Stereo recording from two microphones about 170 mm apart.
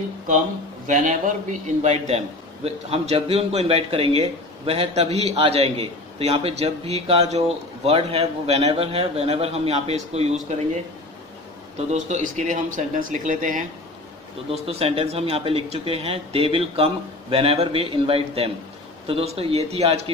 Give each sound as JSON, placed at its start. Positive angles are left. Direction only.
{"t": 0.8, "sound": "a man's voice", "side_deg": -50}
{"t": 11.9, "sound": "speech", "side_deg": -45}
{"t": 14.5, "sound": "a man's voice", "side_deg": -35}